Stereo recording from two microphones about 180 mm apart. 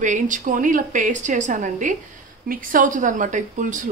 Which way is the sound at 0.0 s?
45° right (ahead or behind).